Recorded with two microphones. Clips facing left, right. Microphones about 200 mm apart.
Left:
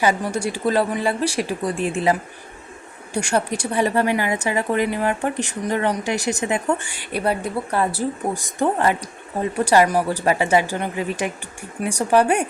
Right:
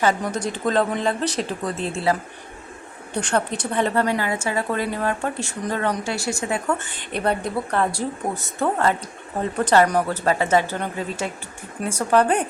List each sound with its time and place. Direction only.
0.0 s a woman's voice: 10° left (ahead or behind)